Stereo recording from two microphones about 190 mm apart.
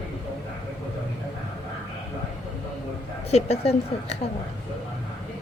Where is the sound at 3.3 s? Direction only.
35° left (ahead or behind).